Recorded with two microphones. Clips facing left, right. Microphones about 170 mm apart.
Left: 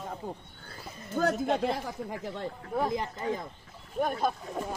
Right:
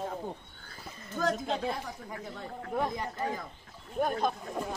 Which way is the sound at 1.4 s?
60° left (ahead or behind).